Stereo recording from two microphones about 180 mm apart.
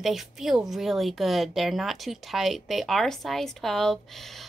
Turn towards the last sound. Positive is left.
turn(degrees=0)  # may be behind; listen again after turning